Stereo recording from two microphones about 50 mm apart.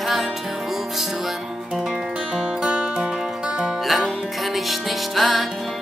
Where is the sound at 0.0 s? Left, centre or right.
Centre.